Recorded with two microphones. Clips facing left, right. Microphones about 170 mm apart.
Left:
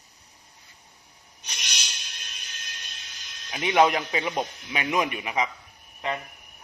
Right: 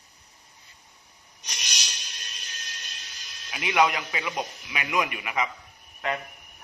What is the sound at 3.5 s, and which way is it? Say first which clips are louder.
A man's voice: left 3 dB; 30° left (ahead or behind).